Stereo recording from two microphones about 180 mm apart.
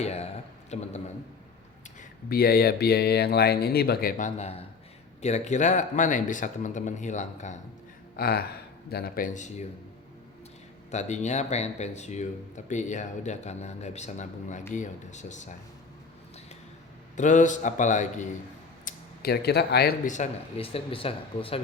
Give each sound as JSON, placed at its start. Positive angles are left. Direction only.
{"t": 0.0, "sound": "a man's voice", "side_deg": 35}
{"t": 0.7, "sound": "a sound", "side_deg": 40}
{"t": 2.0, "sound": "speech", "side_deg": 55}
{"t": 4.2, "sound": "speech", "side_deg": 35}
{"t": 8.1, "sound": "speech", "side_deg": 55}
{"t": 10.9, "sound": "speech", "side_deg": 40}
{"t": 17.2, "sound": "speech", "side_deg": 45}
{"t": 18.9, "sound": "speech", "side_deg": 60}